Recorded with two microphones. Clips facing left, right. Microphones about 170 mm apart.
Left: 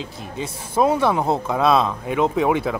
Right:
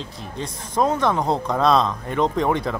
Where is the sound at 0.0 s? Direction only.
5° left (ahead or behind).